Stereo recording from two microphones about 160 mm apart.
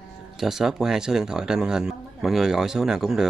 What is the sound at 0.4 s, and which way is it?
Speech, centre (ahead or behind).